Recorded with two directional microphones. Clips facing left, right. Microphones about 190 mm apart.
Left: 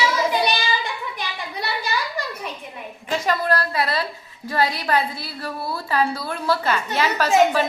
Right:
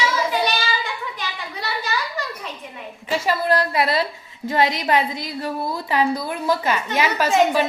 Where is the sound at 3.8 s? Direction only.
25° right (ahead or behind).